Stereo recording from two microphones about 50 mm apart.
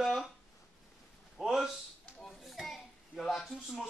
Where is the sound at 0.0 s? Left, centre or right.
Centre.